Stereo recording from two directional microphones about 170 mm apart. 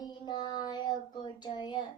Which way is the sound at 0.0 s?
25° left (ahead or behind).